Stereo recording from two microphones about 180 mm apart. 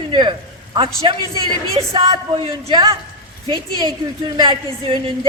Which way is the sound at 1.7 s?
30° right (ahead or behind).